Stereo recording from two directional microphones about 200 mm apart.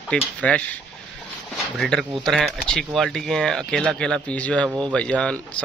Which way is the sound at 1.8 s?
Centre (ahead or behind).